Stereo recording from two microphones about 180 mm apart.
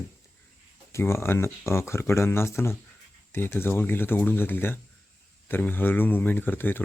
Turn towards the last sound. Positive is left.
turn(degrees=10)  # may be behind; listen again after turning